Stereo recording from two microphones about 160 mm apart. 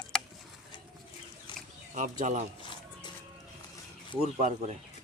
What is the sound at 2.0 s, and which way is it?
Speech, 50° right (ahead or behind).